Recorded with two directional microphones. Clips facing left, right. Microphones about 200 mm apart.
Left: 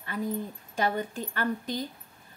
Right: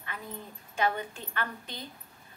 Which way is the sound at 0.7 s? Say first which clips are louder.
Left 1 dB; 40° left (ahead or behind).